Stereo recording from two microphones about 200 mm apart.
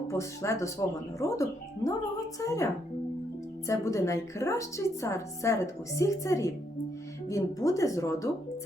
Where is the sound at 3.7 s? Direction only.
15° left (ahead or behind).